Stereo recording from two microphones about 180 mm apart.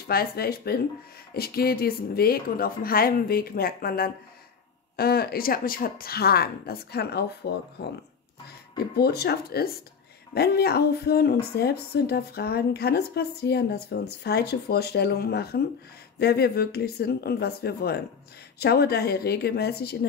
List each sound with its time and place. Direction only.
0.0 s speech: 60° left (ahead or behind)
8.7 s speech: 60° left (ahead or behind)